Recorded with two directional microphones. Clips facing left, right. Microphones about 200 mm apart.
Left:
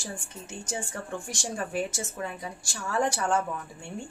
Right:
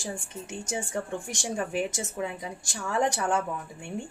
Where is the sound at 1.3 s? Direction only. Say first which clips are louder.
Right 2 dB; 15° right (ahead or behind).